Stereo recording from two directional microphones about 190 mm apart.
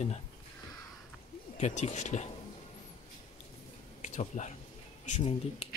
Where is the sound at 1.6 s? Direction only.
40° left (ahead or behind).